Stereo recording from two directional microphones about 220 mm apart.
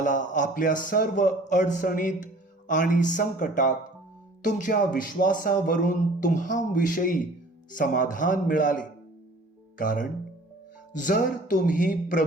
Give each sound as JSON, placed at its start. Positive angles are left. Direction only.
{"t": 0.0, "sound": "a man's voice", "side_deg": 35}